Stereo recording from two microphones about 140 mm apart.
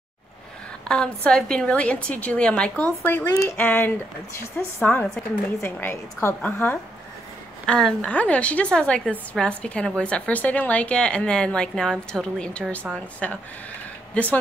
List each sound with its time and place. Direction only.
0.8 s a woman's voice: 5° left (ahead or behind)